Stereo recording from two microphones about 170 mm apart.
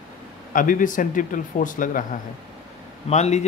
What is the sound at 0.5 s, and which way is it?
Speech, 50° left (ahead or behind).